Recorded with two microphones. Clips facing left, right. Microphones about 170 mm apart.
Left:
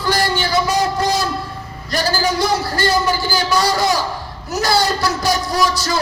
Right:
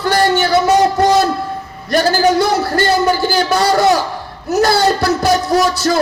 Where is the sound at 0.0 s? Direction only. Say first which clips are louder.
Right 5 dB; 60° right (ahead or behind).